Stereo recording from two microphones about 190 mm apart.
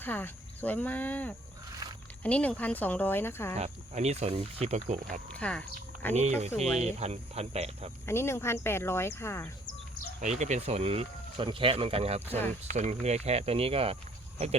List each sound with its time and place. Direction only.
0.0 s speech: 10° left (ahead or behind)
3.5 s speech: 35° right (ahead or behind)
5.3 s speech: 5° left (ahead or behind)
6.1 s speech: 35° right (ahead or behind)
8.0 s speech: 15° left (ahead or behind)
10.2 s speech: 40° right (ahead or behind)